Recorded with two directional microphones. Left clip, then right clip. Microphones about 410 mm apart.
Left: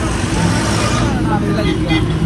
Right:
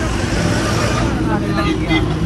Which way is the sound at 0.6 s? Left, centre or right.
Left.